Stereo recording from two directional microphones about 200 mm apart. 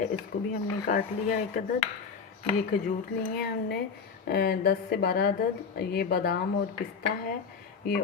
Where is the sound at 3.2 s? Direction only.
55° left (ahead or behind).